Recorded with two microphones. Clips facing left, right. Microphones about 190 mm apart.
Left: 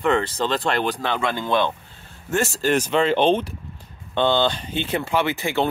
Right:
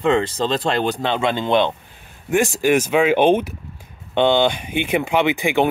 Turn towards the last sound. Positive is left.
turn(degrees=-15)  # may be behind; listen again after turning